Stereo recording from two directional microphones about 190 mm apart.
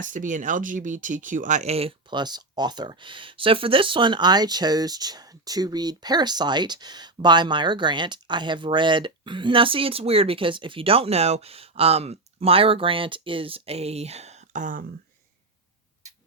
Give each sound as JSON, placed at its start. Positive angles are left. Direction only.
{"t": 0.0, "sound": "speech", "side_deg": -45}